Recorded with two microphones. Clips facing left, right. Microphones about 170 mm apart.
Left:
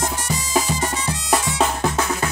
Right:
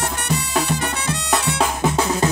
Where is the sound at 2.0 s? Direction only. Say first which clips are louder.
Right 3 dB; 20° right (ahead or behind).